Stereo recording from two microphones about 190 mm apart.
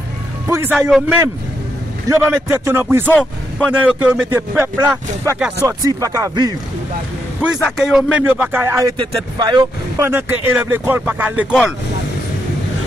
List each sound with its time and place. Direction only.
0.5 s music: 10° right (ahead or behind)
0.7 s a man's voice: 5° right (ahead or behind)
2.0 s speech: 15° right (ahead or behind)
3.1 s speech: 5° left (ahead or behind)
3.6 s speech: 5° right (ahead or behind)
7.6 s speech: centre (ahead or behind)
8.9 s speech: 25° right (ahead or behind); by 11.7 s 5° right (ahead or behind)